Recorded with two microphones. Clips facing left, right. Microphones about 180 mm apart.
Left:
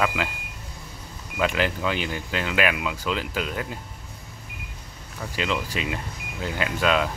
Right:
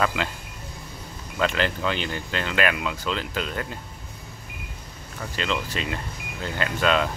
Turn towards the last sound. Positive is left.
turn(degrees=5)  # may be behind; listen again after turning